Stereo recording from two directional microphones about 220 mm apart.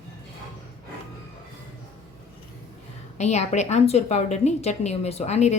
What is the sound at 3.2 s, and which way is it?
A woman's voice, 30° left (ahead or behind).